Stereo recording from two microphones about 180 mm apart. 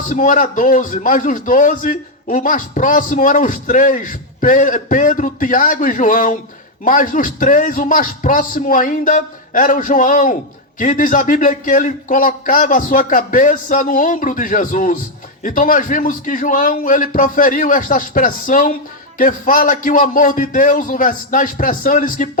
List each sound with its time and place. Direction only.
0.1 s a man's voice: 45° left (ahead or behind)